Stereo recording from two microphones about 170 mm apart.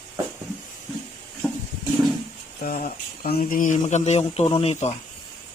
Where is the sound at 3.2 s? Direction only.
50° left (ahead or behind); by 4.9 s 35° left (ahead or behind).